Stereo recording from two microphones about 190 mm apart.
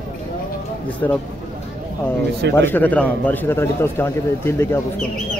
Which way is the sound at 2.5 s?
10° left (ahead or behind).